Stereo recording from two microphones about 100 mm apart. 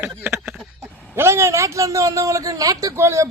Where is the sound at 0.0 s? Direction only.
20° right (ahead or behind).